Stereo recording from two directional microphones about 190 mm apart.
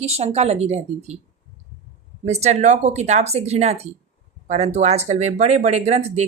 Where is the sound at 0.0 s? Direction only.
35° right (ahead or behind).